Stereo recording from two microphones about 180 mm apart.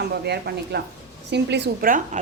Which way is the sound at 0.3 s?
65° right (ahead or behind).